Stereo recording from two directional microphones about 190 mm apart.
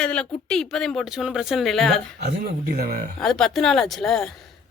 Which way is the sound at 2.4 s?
55° right (ahead or behind).